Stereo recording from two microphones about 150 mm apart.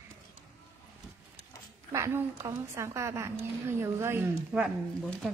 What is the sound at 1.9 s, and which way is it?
A woman's voice, 20° right (ahead or behind).